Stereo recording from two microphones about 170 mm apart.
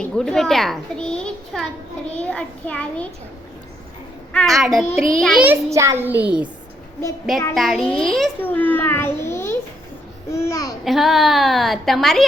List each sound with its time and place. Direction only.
0.0 s a child's voice: 5° left (ahead or behind)
4.3 s a woman's voice: 5° left (ahead or behind)
5.5 s a child's voice: 15° right (ahead or behind)
7.5 s a woman's voice: centre (ahead or behind); by 10.8 s 20° left (ahead or behind)
10.8 s a woman's voice: centre (ahead or behind)